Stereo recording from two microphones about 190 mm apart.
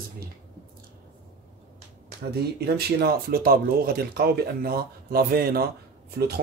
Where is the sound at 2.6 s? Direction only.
55° right (ahead or behind).